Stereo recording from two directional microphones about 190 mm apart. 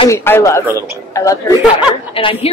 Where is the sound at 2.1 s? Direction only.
30° left (ahead or behind).